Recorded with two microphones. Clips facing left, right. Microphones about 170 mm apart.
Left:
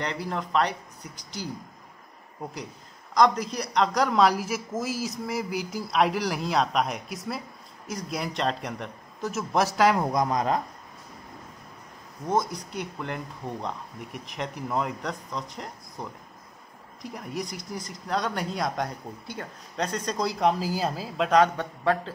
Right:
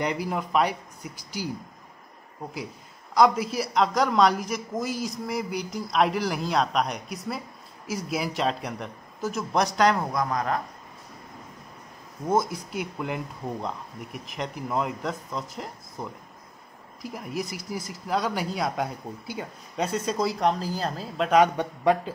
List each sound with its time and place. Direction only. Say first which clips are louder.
0.0 s speech: right 3 dB; 10° right (ahead or behind)
3.2 s a man's voice: right 1 dB; 5° right (ahead or behind)
9.9 s speech: left 2 dB; 20° left (ahead or behind)
12.3 s a man's voice: right 2 dB; 10° right (ahead or behind)
21.4 s speech: right 2 dB; 15° right (ahead or behind)